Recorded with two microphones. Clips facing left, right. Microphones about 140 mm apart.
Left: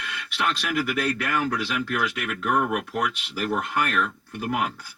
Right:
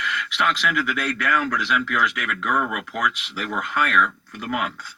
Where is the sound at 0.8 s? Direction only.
30° left (ahead or behind).